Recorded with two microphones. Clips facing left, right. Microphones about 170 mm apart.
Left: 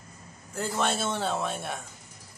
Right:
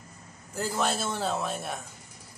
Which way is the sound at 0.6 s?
Centre (ahead or behind).